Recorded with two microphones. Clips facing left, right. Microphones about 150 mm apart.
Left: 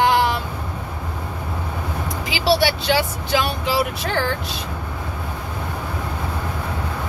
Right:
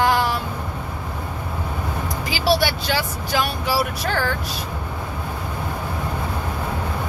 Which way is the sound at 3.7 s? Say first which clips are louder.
Left 1 dB; 20° left (ahead or behind).